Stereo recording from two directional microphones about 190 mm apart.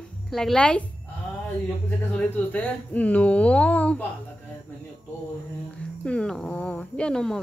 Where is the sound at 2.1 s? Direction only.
10° left (ahead or behind).